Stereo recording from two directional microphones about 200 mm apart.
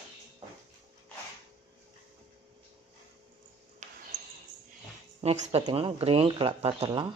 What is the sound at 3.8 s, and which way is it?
Ping, 40° right (ahead or behind).